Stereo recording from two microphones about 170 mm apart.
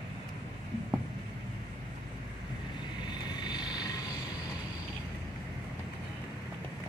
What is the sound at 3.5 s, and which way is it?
Vehicle, 25° left (ahead or behind).